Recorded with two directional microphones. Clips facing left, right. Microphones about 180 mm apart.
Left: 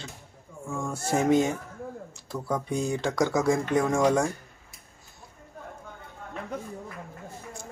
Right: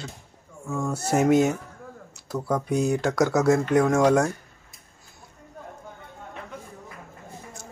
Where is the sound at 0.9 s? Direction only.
40° right (ahead or behind).